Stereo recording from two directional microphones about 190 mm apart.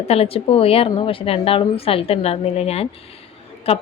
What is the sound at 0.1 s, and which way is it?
A woman's voice, 30° left (ahead or behind).